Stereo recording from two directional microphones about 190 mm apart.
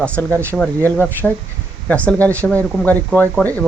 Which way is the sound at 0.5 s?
5° left (ahead or behind).